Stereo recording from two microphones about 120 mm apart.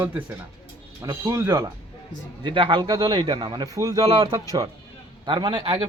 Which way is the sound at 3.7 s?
30° right (ahead or behind).